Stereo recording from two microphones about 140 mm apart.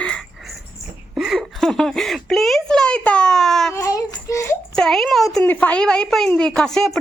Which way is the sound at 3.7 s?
25° left (ahead or behind).